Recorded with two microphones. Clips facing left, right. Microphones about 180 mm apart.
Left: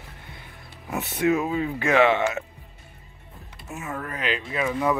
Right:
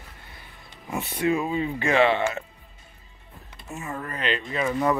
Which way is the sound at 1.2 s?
5° left (ahead or behind).